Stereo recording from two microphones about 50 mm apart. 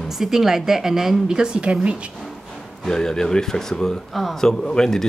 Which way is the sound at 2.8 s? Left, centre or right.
Centre.